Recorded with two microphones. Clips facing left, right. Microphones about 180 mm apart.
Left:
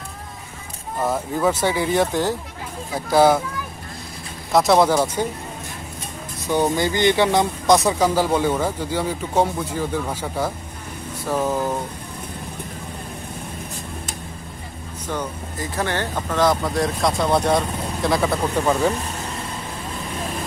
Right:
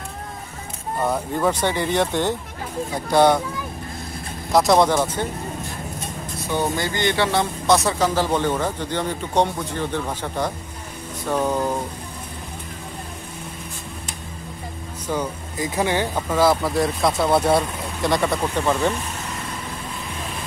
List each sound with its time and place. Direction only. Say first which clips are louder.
0.9 s speech: even; centre (ahead or behind)
4.5 s speech: even; centre (ahead or behind)
6.5 s speech: left 4 dB; 15° left (ahead or behind)
15.0 s speech: right 2 dB; 10° right (ahead or behind)